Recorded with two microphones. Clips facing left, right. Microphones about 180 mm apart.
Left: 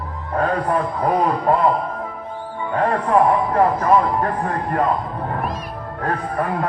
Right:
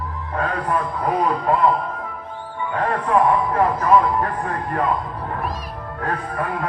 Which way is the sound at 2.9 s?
35° left (ahead or behind).